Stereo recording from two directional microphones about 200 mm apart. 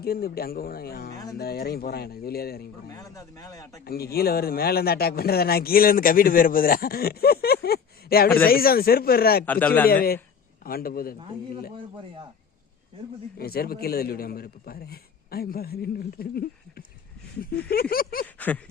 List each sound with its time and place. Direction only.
0.0 s a man's voice: 50° left (ahead or behind)
2.9 s speech: 15° left (ahead or behind)
3.8 s a man's voice: 50° left (ahead or behind)
9.5 s speech: 10° left (ahead or behind)
9.9 s a man's voice: 45° left (ahead or behind)
13.4 s a man's voice: 50° left (ahead or behind)
18.3 s a sound: 10° left (ahead or behind)